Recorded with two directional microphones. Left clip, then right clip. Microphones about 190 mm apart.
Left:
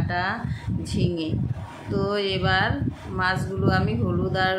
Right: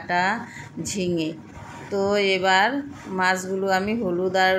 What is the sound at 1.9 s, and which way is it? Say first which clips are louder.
A woman's voice: right 4 dB; 20° right (ahead or behind).